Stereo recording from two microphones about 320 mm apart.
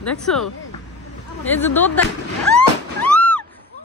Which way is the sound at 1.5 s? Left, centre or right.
Centre.